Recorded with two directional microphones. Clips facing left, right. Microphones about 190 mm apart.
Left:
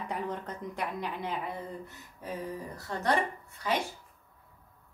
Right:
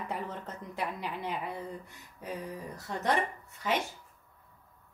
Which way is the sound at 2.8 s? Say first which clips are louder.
Even; 15° right (ahead or behind).